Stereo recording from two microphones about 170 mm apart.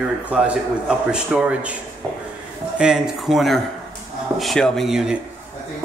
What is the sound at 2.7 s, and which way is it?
A man's voice, 5° right (ahead or behind).